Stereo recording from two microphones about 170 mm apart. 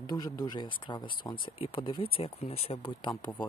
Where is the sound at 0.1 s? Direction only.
25° left (ahead or behind).